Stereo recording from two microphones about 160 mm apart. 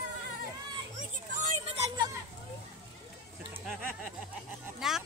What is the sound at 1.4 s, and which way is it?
Vehicle, 40° right (ahead or behind).